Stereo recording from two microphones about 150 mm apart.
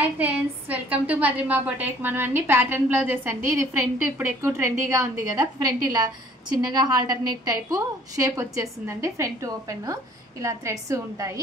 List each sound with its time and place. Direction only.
0.2 s a woman's voice: 10° right (ahead or behind)